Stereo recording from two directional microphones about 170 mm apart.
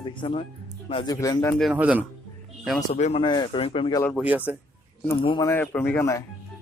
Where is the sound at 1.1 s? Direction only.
20° left (ahead or behind).